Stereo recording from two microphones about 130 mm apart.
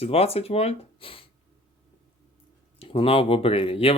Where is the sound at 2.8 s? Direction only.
45° left (ahead or behind).